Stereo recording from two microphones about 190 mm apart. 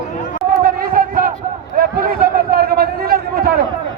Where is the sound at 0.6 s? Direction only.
50° right (ahead or behind).